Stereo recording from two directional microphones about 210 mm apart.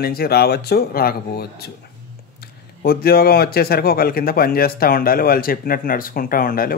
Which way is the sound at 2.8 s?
45° left (ahead or behind).